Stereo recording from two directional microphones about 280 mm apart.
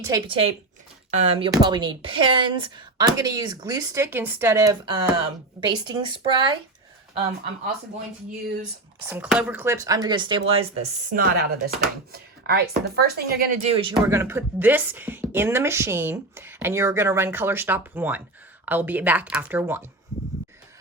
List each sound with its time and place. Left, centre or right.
0.0 s speech: centre
9.0 s speech: centre